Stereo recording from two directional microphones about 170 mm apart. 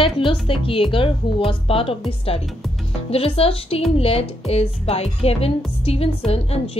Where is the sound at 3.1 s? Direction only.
35° left (ahead or behind).